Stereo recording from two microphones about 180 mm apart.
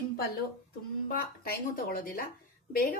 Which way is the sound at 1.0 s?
55° left (ahead or behind).